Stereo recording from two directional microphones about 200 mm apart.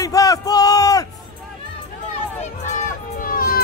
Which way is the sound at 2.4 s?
40° left (ahead or behind).